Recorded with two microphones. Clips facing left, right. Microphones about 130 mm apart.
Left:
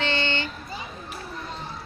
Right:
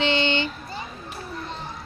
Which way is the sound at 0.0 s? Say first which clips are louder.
Right 4 dB; 20° right (ahead or behind).